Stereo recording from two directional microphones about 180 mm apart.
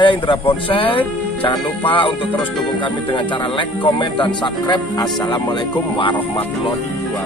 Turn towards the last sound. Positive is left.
turn(degrees=25)  # may be behind; listen again after turning